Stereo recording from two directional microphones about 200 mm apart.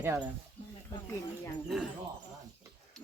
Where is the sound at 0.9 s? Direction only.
15° left (ahead or behind).